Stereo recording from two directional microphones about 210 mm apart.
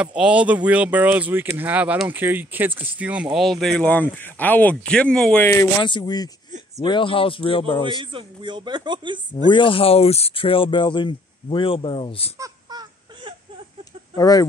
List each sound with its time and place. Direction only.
0.0 s speech: 5° right (ahead or behind); by 7.8 s 25° left (ahead or behind)
8.0 s speech: 25° right (ahead or behind)
9.5 s speech: 25° left (ahead or behind)
12.4 s baby cry: 20° right (ahead or behind)
14.1 s speech: 15° left (ahead or behind)